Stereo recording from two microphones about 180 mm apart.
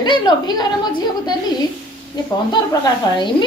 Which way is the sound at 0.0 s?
25° left (ahead or behind).